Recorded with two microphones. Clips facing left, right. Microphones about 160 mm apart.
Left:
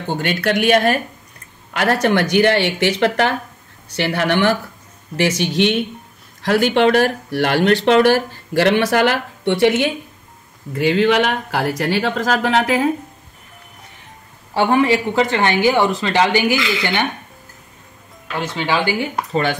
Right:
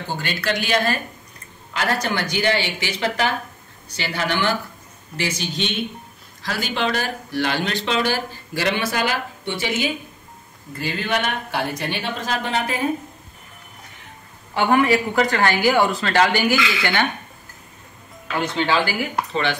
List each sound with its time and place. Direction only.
0.1 s speech: 65° left (ahead or behind)
10.7 s speech: 85° left
14.5 s speech: 30° left (ahead or behind)
18.4 s speech: 5° left (ahead or behind)